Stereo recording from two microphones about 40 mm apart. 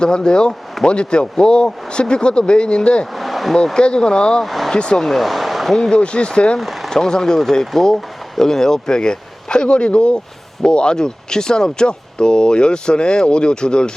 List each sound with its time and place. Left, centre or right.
0.0 s speech: left
3.1 s a sound: centre
3.8 s speech: left
4.4 s vehicle: centre
4.7 s speech: left
4.9 s speech: centre
5.7 s speech: left
6.6 s a sound: centre
6.9 s speech: centre